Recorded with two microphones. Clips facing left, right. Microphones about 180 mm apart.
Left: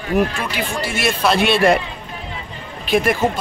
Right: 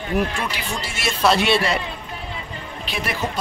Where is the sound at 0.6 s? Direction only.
55° left (ahead or behind).